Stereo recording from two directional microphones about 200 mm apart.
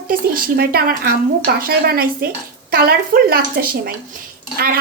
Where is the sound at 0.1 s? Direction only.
45° right (ahead or behind).